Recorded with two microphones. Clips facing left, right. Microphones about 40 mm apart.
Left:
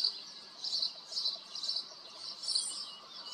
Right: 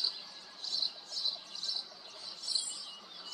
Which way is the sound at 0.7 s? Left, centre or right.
Right.